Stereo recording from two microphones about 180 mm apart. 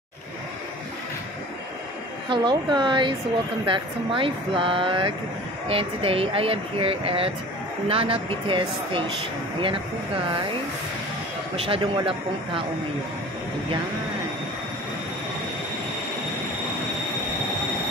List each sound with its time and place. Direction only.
2.2 s speech: 25° right (ahead or behind)
11.5 s speech: 30° right (ahead or behind)